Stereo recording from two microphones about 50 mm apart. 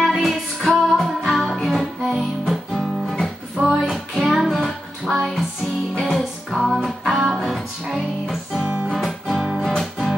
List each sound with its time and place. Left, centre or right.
0.0 s music: centre
3.5 s music: centre
8.6 s music: right
8.9 s music: centre